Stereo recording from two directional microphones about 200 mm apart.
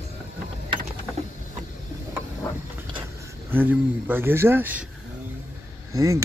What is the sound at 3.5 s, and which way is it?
Speech, 10° right (ahead or behind).